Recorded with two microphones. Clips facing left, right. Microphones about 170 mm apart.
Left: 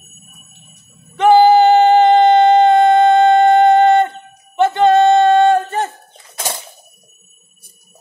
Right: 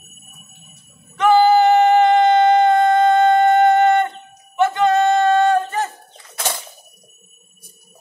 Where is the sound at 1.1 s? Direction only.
30° left (ahead or behind).